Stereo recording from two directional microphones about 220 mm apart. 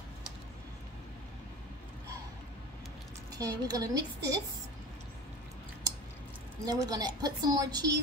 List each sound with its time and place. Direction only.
3.3 s a woman's voice: 15° right (ahead or behind)
6.6 s a woman's voice: 20° right (ahead or behind)